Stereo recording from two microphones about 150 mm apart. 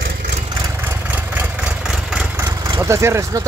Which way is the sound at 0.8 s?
15° right (ahead or behind).